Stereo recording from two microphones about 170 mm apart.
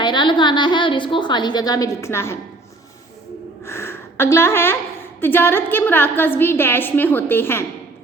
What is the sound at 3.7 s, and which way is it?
A woman's voice, 15° left (ahead or behind).